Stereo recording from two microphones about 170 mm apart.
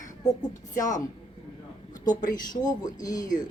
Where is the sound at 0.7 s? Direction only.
50° left (ahead or behind).